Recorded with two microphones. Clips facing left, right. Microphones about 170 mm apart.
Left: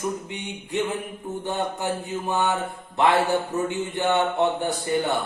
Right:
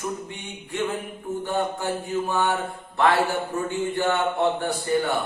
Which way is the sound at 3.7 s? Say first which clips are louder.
Right 2 dB; 20° left (ahead or behind).